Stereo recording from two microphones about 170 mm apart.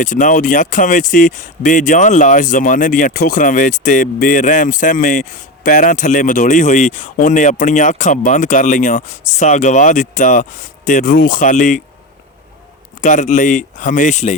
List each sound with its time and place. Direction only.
0.0 s speech: 50° left (ahead or behind)
13.0 s speech: 45° left (ahead or behind)